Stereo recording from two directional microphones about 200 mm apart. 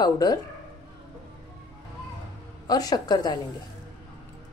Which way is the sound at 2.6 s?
20° left (ahead or behind).